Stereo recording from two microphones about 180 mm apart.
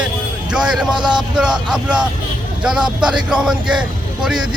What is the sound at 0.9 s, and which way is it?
Speech, 25° right (ahead or behind).